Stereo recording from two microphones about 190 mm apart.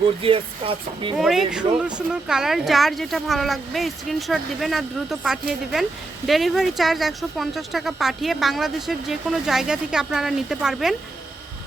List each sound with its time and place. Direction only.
0.2 s speech: 30° right (ahead or behind)
1.1 s speech: centre (ahead or behind)